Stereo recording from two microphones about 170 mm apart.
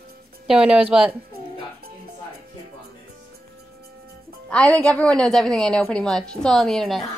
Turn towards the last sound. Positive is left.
turn(degrees=0)  # may be behind; listen again after turning